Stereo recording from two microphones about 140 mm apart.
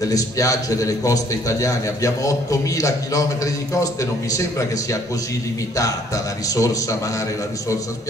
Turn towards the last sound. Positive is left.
turn(degrees=25)  # may be behind; listen again after turning